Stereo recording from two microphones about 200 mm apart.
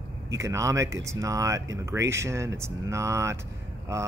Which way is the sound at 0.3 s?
15° right (ahead or behind).